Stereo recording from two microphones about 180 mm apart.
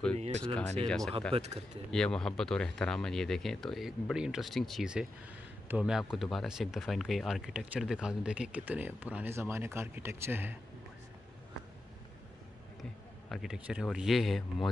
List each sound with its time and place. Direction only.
0.2 s speech: 35° right (ahead or behind)
0.8 s speech: 5° left (ahead or behind)
1.3 s speech: 35° right (ahead or behind)
1.9 s speech: 5° left (ahead or behind); by 10.5 s 10° right (ahead or behind)
13.3 s speech: centre (ahead or behind)